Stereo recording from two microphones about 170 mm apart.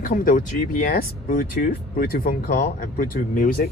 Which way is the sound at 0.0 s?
55° left (ahead or behind).